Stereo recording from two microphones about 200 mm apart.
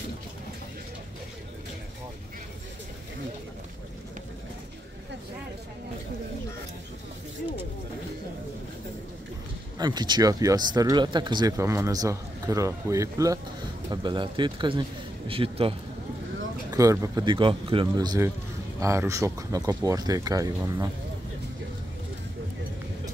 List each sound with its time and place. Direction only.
9.8 s speech: 20° right (ahead or behind)
16.7 s speech: 15° right (ahead or behind)